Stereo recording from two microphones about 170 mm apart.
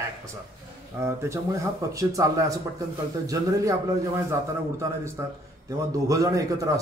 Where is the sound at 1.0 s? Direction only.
15° right (ahead or behind).